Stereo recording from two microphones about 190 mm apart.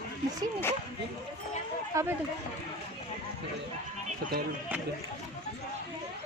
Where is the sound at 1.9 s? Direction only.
15° right (ahead or behind).